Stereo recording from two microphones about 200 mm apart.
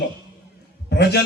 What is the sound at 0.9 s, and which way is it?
Speech, 55° left (ahead or behind).